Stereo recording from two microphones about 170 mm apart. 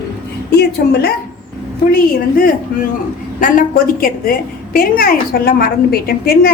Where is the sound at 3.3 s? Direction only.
55° left (ahead or behind).